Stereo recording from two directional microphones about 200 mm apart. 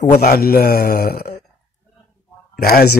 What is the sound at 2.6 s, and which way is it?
Speech, 50° left (ahead or behind).